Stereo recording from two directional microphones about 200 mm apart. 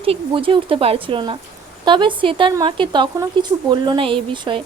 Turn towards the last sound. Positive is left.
turn(degrees=-25)  # may be behind; listen again after turning